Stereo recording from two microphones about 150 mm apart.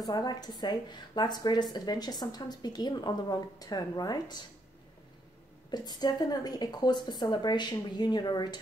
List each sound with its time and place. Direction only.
0.0 s a woman's voice: 25° left (ahead or behind)
5.7 s a woman's voice: 30° left (ahead or behind)